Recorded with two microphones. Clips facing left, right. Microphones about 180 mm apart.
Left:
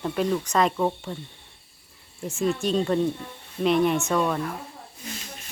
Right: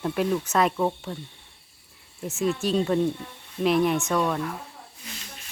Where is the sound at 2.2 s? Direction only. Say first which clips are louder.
Left 1 dB; centre (ahead or behind).